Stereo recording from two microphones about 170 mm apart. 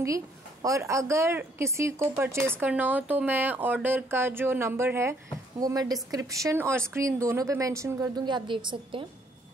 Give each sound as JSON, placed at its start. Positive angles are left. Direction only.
{"t": 0.0, "sound": "a woman's voice", "side_deg": -20}